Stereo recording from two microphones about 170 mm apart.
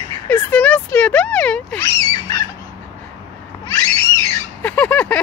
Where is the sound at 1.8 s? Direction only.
15° left (ahead or behind).